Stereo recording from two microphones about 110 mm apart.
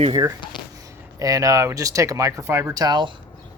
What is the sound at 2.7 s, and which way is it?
Speech, 40° right (ahead or behind).